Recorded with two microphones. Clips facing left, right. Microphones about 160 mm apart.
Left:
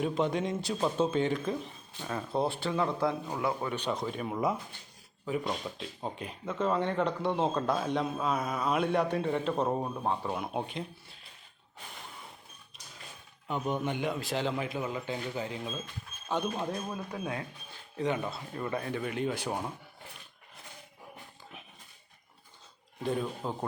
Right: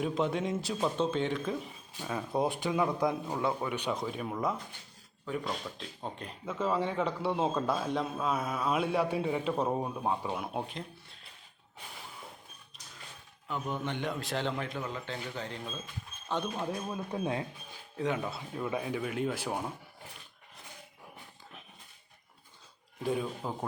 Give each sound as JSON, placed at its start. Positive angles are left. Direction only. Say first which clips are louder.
{"t": 0.0, "sound": "speech", "louder": "left 1 dB", "side_deg": 0}
{"t": 11.9, "sound": "a sound", "louder": "left 1 dB", "side_deg": 0}
{"t": 13.5, "sound": "a man's voice", "louder": "left 3 dB", "side_deg": 20}
{"t": 17.1, "sound": "speech", "louder": "right 3 dB", "side_deg": -25}
{"t": 17.9, "sound": "speech", "louder": "left 1 dB", "side_deg": 0}
{"t": 23.0, "sound": "speech", "louder": "even", "side_deg": -5}